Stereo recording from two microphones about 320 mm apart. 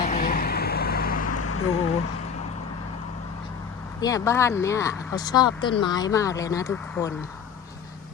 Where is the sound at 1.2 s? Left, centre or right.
Left.